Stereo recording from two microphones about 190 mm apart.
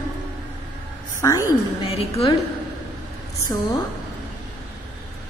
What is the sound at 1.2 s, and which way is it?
Speech, 15° left (ahead or behind).